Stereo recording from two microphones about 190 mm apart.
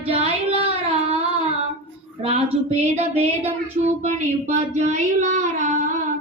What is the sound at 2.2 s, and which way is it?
A woman's voice, 30° right (ahead or behind).